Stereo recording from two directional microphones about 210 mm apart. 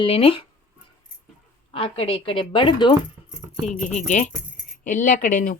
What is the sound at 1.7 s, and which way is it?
A woman's voice, 25° left (ahead or behind).